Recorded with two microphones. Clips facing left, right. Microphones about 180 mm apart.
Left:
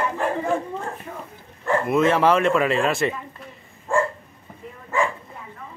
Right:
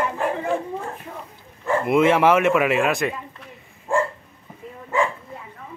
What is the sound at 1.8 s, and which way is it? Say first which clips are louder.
Speech: right 2 dB; 10° right (ahead or behind).